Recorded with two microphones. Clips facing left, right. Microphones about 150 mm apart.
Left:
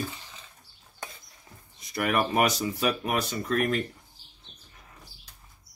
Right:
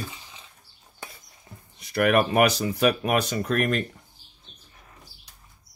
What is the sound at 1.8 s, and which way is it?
Speech, 75° right (ahead or behind).